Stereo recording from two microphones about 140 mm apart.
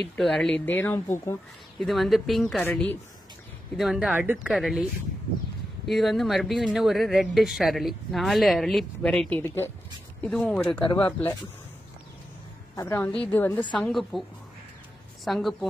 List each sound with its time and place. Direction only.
0.2 s speech: 5° left (ahead or behind)
1.8 s speech: centre (ahead or behind)
5.9 s speech: centre (ahead or behind)
10.8 s speech: 35° left (ahead or behind)
11.1 s speech: 15° left (ahead or behind)
12.8 s speech: 15° left (ahead or behind)
15.2 s speech: centre (ahead or behind)